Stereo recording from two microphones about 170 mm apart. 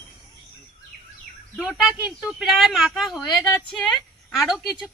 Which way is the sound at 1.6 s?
Centre (ahead or behind).